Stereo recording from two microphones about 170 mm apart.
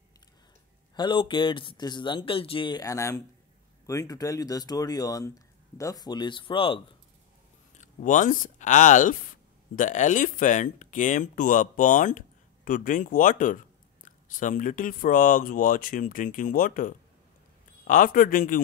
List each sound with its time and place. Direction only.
0.9 s speech: 25° left (ahead or behind)
7.7 s speech: 45° left (ahead or behind)